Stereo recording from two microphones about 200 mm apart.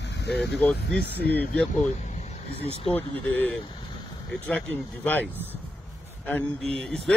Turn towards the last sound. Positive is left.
turn(degrees=0)  # may be behind; listen again after turning